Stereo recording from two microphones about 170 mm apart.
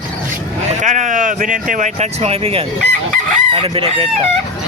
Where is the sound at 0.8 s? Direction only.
45° right (ahead or behind).